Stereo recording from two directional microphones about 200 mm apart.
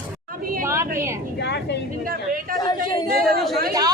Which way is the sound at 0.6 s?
15° right (ahead or behind).